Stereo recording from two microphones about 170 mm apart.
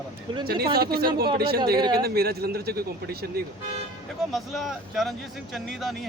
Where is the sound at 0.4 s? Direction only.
65° right (ahead or behind).